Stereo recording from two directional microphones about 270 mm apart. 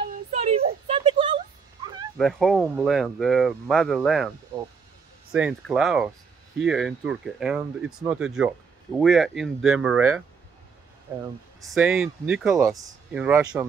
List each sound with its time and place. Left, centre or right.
0.0 s a sound: right
2.1 s speech: centre
5.3 s speech: centre
11.6 s speech: centre